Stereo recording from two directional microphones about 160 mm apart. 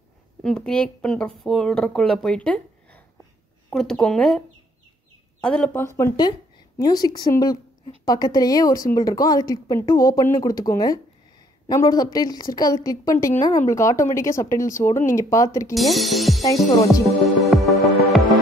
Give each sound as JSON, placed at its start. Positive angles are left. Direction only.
{"t": 0.4, "sound": "speech", "side_deg": 5}
{"t": 5.4, "sound": "a woman's voice", "side_deg": 5}
{"t": 15.7, "sound": "speech", "side_deg": 0}
{"t": 16.4, "sound": "speech", "side_deg": 20}
{"t": 17.4, "sound": "music", "side_deg": 0}